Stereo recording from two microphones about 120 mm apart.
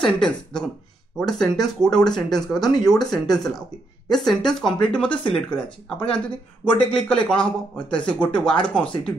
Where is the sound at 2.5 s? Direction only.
35° left (ahead or behind).